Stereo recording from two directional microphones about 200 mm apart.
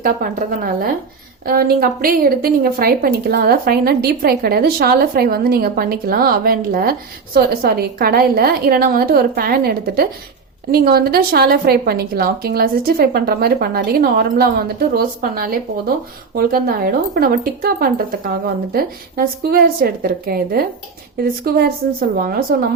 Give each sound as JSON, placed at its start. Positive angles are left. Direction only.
{"t": 0.0, "sound": "a woman's voice", "side_deg": -45}